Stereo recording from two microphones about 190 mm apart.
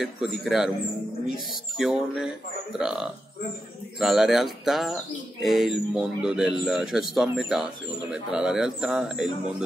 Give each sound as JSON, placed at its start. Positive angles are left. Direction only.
{"t": 0.0, "sound": "speech", "side_deg": 0}
{"t": 1.8, "sound": "speech", "side_deg": -5}